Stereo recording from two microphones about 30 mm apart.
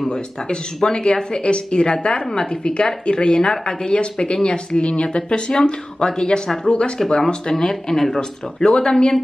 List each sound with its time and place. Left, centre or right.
0.8 s a woman's voice: left
7.5 s speech: centre
8.6 s a woman's voice: left